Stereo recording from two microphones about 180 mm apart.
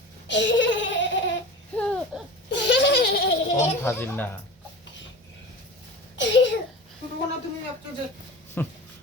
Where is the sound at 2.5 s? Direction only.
80° left; by 3.5 s 65° left (ahead or behind).